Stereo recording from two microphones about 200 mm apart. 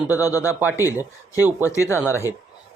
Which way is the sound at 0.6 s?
10° right (ahead or behind).